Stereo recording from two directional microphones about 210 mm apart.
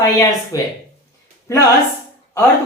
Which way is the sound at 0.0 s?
15° left (ahead or behind).